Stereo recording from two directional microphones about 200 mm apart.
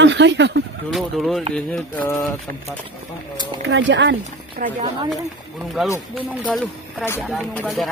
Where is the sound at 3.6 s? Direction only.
65° right (ahead or behind).